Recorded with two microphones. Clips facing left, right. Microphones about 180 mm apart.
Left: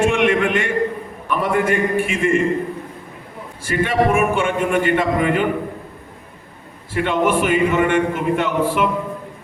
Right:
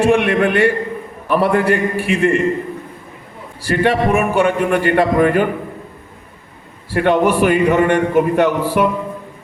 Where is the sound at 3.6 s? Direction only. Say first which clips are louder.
Right 2 dB; 40° right (ahead or behind).